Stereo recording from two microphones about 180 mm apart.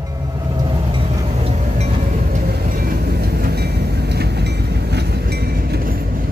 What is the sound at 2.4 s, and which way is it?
Train, 60° right (ahead or behind).